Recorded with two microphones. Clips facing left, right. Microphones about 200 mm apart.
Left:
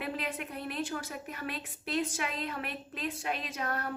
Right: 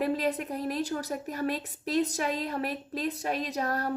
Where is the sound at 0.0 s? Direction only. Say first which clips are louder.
Right 8 dB; 35° right (ahead or behind).